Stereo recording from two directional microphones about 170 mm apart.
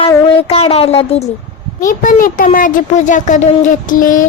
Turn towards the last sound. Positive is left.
turn(degrees=50)  # may be behind; listen again after turning